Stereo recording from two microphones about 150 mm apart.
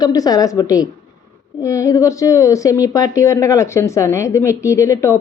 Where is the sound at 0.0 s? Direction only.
25° left (ahead or behind).